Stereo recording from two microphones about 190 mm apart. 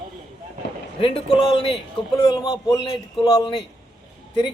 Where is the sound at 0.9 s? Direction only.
25° left (ahead or behind).